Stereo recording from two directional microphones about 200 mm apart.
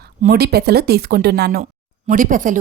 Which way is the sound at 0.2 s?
50° right (ahead or behind).